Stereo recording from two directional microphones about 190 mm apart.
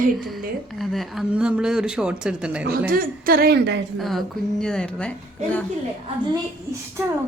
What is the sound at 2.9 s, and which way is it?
Speech, 50° right (ahead or behind).